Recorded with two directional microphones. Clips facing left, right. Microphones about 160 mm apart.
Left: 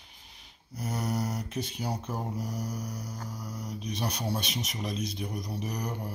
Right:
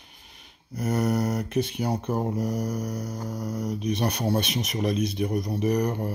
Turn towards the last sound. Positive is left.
turn(degrees=-60)  # may be behind; listen again after turning